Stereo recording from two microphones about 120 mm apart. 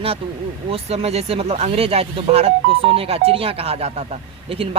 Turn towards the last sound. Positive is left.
turn(degrees=-55)  # may be behind; listen again after turning